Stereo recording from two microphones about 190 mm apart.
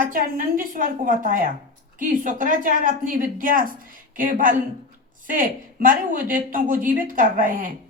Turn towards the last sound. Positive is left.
turn(degrees=-45)  # may be behind; listen again after turning